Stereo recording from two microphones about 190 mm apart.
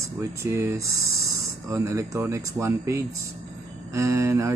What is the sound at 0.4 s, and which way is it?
Speech, 15° right (ahead or behind).